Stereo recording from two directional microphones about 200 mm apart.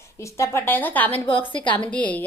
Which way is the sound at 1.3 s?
25° left (ahead or behind).